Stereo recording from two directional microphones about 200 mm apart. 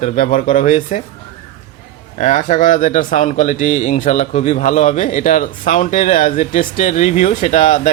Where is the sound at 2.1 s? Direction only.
40° left (ahead or behind).